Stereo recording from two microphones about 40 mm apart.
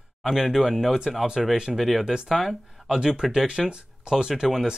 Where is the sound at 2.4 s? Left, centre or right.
Centre.